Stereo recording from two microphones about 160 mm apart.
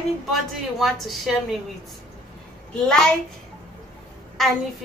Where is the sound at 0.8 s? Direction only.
Centre (ahead or behind).